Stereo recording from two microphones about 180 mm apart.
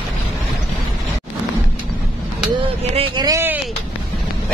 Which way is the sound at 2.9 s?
30° right (ahead or behind).